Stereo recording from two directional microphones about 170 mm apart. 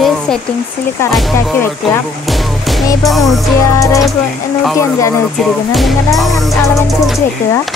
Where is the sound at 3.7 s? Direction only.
20° left (ahead or behind).